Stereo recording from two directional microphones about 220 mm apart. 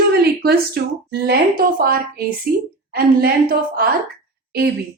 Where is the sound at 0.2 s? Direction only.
45° right (ahead or behind).